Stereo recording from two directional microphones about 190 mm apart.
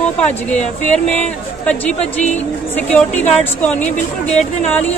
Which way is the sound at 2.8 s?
5° left (ahead or behind).